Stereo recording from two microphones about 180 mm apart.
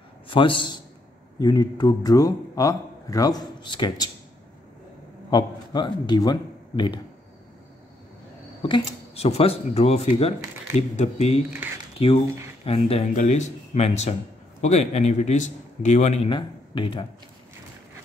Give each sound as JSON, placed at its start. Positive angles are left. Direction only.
{"t": 0.3, "sound": "a man's voice", "side_deg": 30}
{"t": 5.3, "sound": "a man's voice", "side_deg": 25}
{"t": 8.6, "sound": "speech", "side_deg": 30}
{"t": 12.6, "sound": "speech", "side_deg": 35}
{"t": 16.3, "sound": "speech", "side_deg": 25}